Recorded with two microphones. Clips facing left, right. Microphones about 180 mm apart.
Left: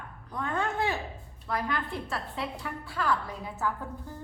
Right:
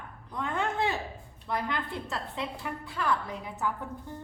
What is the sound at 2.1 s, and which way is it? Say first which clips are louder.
A man's voice: left 1 dB; 20° right (ahead or behind).